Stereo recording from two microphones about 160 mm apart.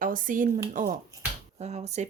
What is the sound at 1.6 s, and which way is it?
Speech, 45° right (ahead or behind).